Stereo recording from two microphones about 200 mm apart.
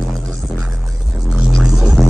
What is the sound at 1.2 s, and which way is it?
Music, 5° right (ahead or behind).